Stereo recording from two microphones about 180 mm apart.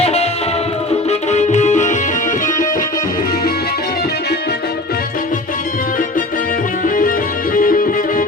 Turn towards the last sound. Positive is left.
turn(degrees=50)  # may be behind; listen again after turning